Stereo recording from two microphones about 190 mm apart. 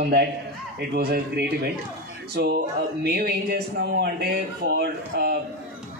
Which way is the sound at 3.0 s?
55° right (ahead or behind).